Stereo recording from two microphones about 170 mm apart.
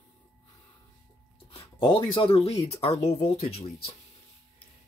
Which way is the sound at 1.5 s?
30° left (ahead or behind).